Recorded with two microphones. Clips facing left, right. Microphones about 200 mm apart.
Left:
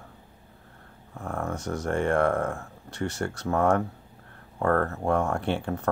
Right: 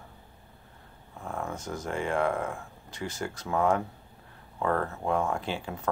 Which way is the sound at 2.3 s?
45° left (ahead or behind).